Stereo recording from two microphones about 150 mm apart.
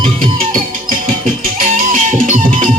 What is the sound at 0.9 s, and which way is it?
Music, 70° right (ahead or behind).